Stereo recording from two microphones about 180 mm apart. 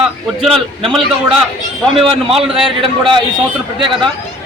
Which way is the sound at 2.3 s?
30° right (ahead or behind).